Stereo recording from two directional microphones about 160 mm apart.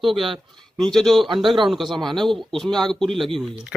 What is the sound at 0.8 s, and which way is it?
A man's voice, 5° left (ahead or behind).